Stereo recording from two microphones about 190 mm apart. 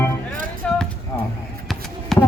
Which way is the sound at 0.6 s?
5° left (ahead or behind).